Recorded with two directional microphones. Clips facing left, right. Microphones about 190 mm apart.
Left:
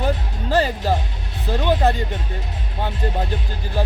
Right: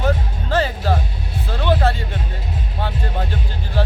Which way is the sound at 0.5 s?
15° left (ahead or behind).